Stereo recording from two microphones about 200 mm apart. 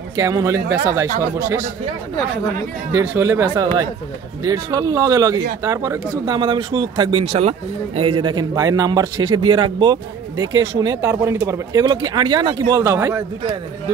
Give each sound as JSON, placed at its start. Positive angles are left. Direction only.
{"t": 0.1, "sound": "speech", "side_deg": -15}
{"t": 2.9, "sound": "speech", "side_deg": -15}